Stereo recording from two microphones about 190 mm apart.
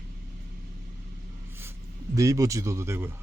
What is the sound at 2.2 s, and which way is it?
Speech, 15° right (ahead or behind).